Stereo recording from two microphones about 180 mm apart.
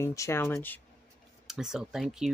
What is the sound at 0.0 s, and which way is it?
Speech, 15° left (ahead or behind).